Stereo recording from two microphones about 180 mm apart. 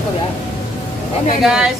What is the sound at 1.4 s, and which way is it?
Speech, 5° right (ahead or behind).